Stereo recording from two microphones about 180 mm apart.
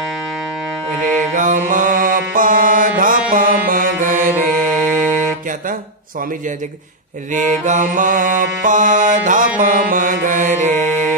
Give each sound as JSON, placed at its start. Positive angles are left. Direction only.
{"t": 1.3, "sound": "music", "side_deg": -45}
{"t": 7.3, "sound": "music", "side_deg": -45}